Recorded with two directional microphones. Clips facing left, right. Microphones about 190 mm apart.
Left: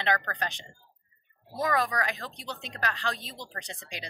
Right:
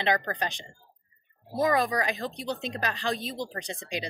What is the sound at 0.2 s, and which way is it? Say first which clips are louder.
Speech: right 3 dB; 15° right (ahead or behind).